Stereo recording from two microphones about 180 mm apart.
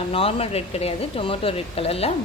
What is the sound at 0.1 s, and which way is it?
A woman's voice, 30° left (ahead or behind).